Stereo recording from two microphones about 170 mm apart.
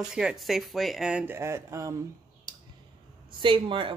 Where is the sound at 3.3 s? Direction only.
30° right (ahead or behind).